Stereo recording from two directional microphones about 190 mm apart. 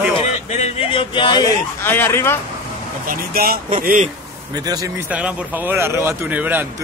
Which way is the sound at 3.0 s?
50° right (ahead or behind).